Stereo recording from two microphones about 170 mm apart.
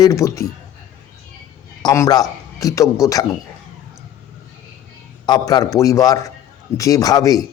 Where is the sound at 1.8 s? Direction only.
20° left (ahead or behind).